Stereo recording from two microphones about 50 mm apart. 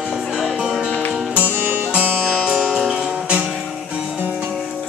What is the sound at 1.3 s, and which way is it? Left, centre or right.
Music, right.